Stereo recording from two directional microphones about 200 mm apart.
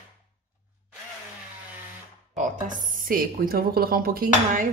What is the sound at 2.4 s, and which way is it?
A woman's voice, 40° right (ahead or behind).